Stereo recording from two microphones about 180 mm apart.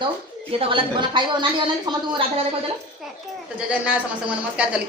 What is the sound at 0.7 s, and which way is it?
A woman's voice, 25° right (ahead or behind).